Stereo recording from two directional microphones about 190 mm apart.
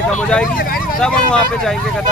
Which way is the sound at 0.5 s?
50° left (ahead or behind).